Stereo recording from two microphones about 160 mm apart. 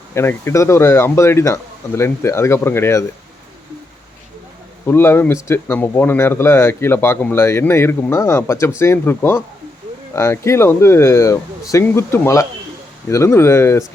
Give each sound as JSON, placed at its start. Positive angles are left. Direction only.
{"t": 0.1, "sound": "speech", "side_deg": 15}
{"t": 4.9, "sound": "speech", "side_deg": 15}